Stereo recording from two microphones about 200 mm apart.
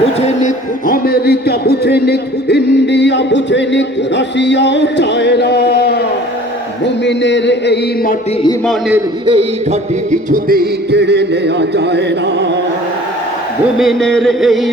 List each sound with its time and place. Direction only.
0.4 s a man's voice: 45° left (ahead or behind)
9.2 s music: 30° right (ahead or behind); by 12.5 s 60° right (ahead or behind)
13.7 s a sound: centre (ahead or behind)